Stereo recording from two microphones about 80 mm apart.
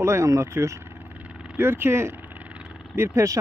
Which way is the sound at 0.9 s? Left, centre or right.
Right.